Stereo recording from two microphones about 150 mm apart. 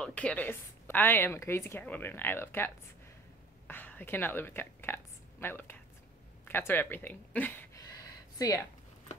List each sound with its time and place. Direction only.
0.0 s a woman's voice: 10° left (ahead or behind)
8.4 s speech: 25° left (ahead or behind)